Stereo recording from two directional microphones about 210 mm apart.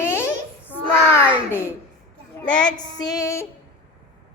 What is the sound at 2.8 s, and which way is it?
Speech, 20° left (ahead or behind).